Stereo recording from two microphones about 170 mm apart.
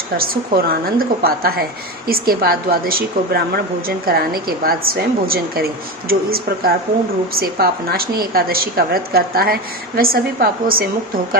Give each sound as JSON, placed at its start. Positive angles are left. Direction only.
{"t": 0.2, "sound": "a woman's voice", "side_deg": -60}